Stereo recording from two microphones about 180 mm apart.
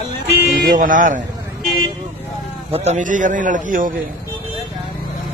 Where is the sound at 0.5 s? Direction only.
50° right (ahead or behind).